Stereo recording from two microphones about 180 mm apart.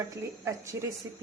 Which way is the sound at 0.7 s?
85° right.